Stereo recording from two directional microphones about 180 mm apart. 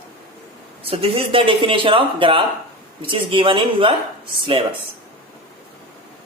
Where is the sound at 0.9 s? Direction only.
30° right (ahead or behind).